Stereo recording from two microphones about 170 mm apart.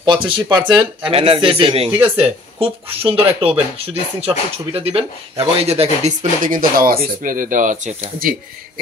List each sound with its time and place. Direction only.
0.0 s speech: 30° right (ahead or behind)
6.4 s speech: 55° right (ahead or behind)